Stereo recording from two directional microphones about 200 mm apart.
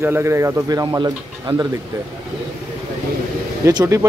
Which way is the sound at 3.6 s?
20° right (ahead or behind).